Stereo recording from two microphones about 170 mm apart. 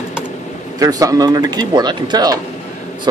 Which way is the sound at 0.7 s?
20° right (ahead or behind).